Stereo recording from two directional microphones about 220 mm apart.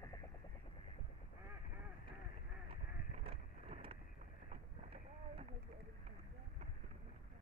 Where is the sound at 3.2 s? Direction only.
25° right (ahead or behind).